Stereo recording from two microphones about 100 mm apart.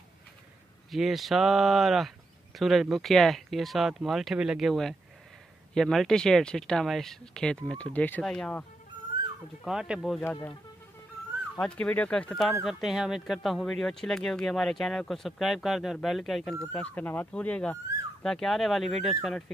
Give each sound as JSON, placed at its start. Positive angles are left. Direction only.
{"t": 0.8, "sound": "speech", "side_deg": 0}
{"t": 9.7, "sound": "speech", "side_deg": -5}
{"t": 10.2, "sound": "speech", "side_deg": 25}
{"t": 11.6, "sound": "speech", "side_deg": 10}
{"t": 16.7, "sound": "speech", "side_deg": 15}